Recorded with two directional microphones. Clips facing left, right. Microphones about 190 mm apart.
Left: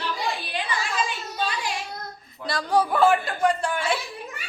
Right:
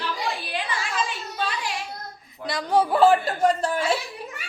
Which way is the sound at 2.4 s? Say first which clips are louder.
Right 1 dB; 20° right (ahead or behind).